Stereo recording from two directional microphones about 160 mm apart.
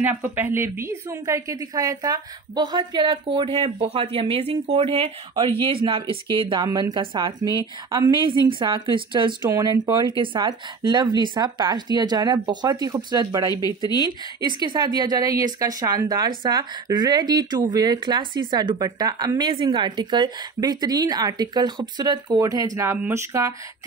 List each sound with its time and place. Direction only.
0.0 s a woman's voice: 10° right (ahead or behind); by 6.1 s 35° right (ahead or behind)
6.6 s a woman's voice: 25° right (ahead or behind)
9.5 s a woman's voice: 20° right (ahead or behind)
13.5 s speech: 25° left (ahead or behind)
14.4 s a woman's voice: 25° right (ahead or behind)